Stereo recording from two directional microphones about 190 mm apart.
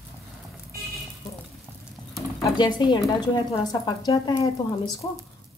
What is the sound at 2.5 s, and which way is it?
A woman's voice, 25° left (ahead or behind).